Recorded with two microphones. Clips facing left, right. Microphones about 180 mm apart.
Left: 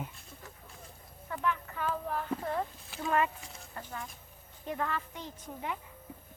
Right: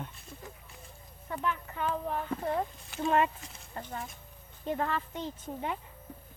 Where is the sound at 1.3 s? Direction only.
20° right (ahead or behind).